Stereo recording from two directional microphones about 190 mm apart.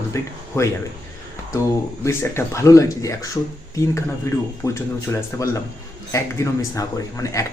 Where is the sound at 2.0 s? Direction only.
15° left (ahead or behind).